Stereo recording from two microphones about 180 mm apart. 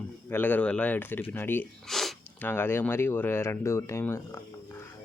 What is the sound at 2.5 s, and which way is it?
Speech, 10° left (ahead or behind).